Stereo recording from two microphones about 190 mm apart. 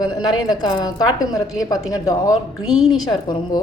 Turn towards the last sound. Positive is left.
turn(degrees=25)  # may be behind; listen again after turning